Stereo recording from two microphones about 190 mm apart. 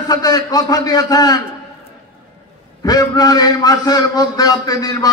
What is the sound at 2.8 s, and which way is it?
A man's voice, 20° left (ahead or behind).